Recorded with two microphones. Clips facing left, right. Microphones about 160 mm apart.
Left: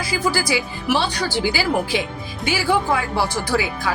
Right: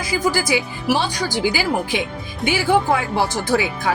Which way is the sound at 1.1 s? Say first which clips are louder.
Right 1 dB; 15° right (ahead or behind).